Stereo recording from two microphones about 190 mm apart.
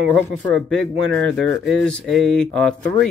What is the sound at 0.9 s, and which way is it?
Speech, 90° right.